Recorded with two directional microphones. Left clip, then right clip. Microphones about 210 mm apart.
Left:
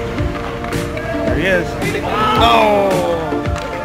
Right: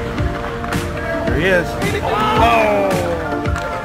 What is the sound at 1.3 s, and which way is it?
Music, 50° right (ahead or behind).